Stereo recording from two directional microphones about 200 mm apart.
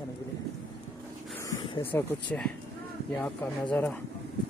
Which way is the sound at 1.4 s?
20° left (ahead or behind).